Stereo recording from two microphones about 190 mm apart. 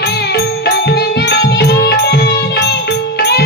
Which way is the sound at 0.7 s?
60° left (ahead or behind).